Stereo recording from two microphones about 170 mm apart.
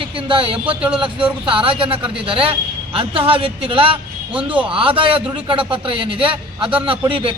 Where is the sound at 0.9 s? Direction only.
30° right (ahead or behind).